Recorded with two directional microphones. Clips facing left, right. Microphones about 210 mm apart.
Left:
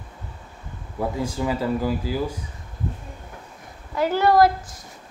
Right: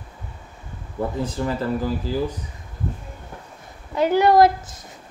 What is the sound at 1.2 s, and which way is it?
Speech, 10° left (ahead or behind).